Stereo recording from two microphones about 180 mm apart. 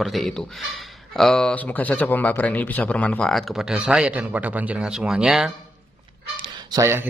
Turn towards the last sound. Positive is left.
turn(degrees=-15)  # may be behind; listen again after turning